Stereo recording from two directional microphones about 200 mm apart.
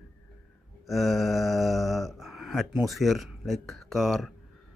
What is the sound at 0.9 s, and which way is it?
Speech, centre (ahead or behind).